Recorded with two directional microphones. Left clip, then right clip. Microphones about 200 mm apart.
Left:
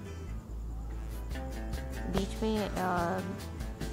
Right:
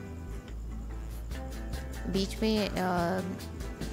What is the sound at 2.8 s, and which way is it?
Music, 30° right (ahead or behind).